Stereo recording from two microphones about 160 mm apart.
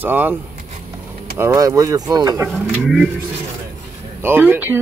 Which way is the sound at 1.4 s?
20° right (ahead or behind).